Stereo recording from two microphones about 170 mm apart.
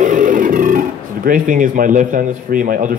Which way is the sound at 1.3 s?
50° right (ahead or behind).